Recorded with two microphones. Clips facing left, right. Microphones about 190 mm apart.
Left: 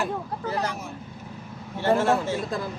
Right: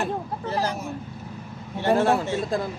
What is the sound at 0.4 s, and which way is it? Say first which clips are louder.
Speech: right 2 dB; 30° right (ahead or behind).